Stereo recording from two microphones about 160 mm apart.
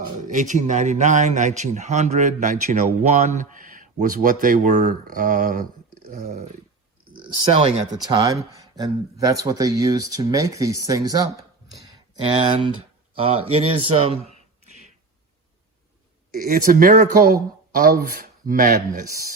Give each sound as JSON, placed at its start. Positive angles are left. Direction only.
{"t": 0.3, "sound": "a man's voice", "side_deg": -50}
{"t": 7.1, "sound": "speech", "side_deg": -35}
{"t": 8.0, "sound": "speech", "side_deg": -25}
{"t": 12.2, "sound": "speech", "side_deg": -35}
{"t": 16.3, "sound": "speech", "side_deg": -65}